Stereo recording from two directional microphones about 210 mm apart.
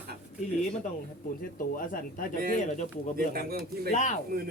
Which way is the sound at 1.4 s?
40° left (ahead or behind).